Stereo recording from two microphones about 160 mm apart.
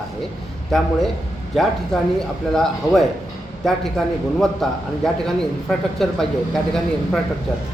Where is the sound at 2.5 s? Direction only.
Centre (ahead or behind).